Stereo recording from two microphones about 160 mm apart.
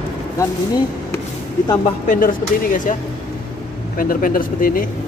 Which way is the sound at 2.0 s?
55° left (ahead or behind).